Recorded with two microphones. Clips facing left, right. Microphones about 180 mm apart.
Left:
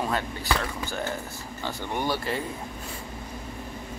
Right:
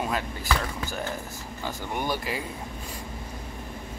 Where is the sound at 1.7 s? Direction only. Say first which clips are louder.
Left 1 dB; 15° right (ahead or behind).